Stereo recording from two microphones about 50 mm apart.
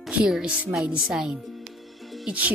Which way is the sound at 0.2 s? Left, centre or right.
Centre.